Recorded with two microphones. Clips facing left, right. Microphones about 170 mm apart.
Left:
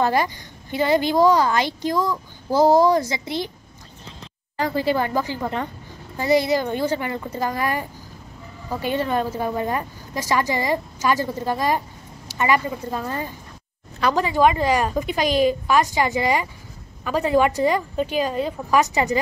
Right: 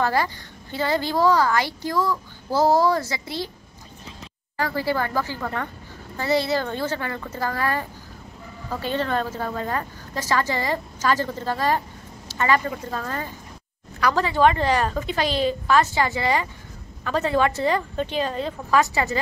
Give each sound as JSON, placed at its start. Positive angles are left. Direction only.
{"t": 0.0, "sound": "a woman's voice", "side_deg": 15}
{"t": 4.6, "sound": "a woman's voice", "side_deg": 20}